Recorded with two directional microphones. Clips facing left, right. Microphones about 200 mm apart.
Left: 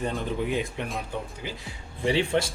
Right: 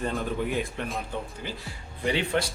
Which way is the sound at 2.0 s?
30° left (ahead or behind).